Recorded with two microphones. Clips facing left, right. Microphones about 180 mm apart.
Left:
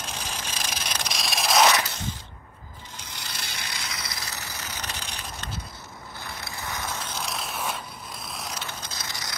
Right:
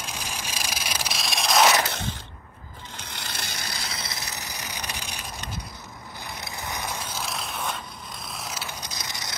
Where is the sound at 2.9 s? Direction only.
60° right (ahead or behind); by 5.6 s 10° right (ahead or behind).